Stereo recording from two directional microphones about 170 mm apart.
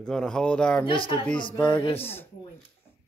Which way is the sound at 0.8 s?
30° left (ahead or behind).